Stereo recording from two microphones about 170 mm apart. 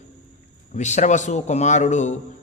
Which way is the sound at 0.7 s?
45° left (ahead or behind).